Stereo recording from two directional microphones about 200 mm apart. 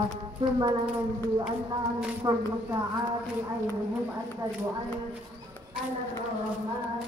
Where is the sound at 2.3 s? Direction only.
20° right (ahead or behind).